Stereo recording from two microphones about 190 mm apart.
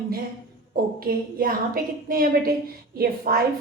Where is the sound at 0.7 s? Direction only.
50° right (ahead or behind).